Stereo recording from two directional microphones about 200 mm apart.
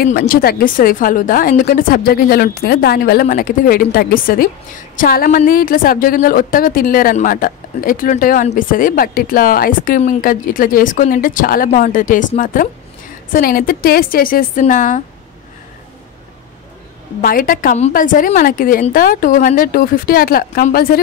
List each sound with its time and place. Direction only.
0.0 s a woman's voice: 50° left (ahead or behind)
17.2 s a woman's voice: 45° left (ahead or behind)